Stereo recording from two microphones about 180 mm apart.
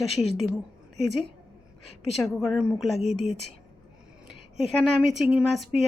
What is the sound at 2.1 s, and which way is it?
Speech, centre (ahead or behind).